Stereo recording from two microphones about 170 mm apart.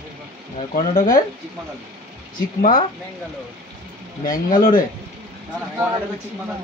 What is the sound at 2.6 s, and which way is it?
Speech, 55° left (ahead or behind).